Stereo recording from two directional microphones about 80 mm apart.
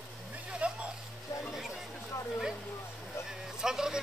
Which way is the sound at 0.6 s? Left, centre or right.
Centre.